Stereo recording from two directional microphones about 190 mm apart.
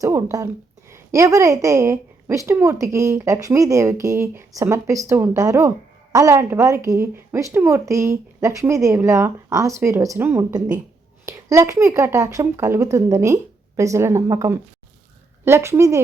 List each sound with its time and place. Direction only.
0.0 s a woman's voice: 15° right (ahead or behind)